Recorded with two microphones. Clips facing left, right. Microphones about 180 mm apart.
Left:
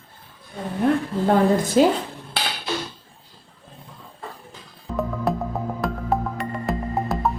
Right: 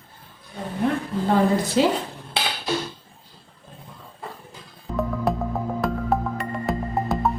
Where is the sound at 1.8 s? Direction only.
50° left (ahead or behind).